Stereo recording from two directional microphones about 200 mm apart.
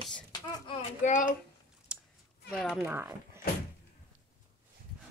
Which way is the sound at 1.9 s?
5° right (ahead or behind).